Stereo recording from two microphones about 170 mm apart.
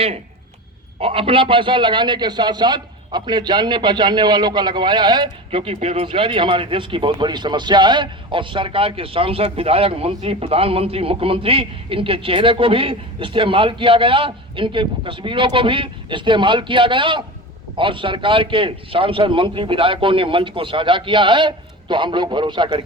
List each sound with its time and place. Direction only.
0.9 s a man's voice: 35° right (ahead or behind)